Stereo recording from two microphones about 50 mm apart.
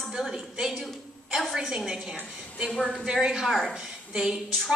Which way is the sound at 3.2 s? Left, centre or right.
Centre.